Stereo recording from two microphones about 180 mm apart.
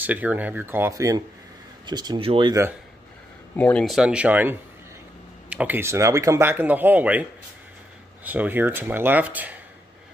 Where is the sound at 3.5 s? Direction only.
5° left (ahead or behind); by 9.6 s 10° right (ahead or behind).